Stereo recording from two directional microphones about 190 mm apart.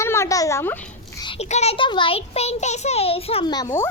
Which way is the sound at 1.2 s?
30° left (ahead or behind).